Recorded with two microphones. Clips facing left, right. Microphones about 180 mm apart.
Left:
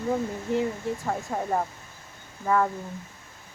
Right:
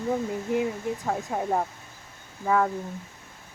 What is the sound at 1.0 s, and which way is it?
Speech, 5° right (ahead or behind).